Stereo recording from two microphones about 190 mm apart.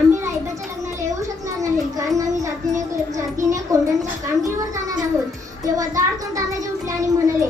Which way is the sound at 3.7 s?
15° right (ahead or behind).